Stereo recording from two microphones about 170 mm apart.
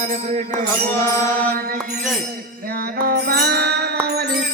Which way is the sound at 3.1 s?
70° right (ahead or behind).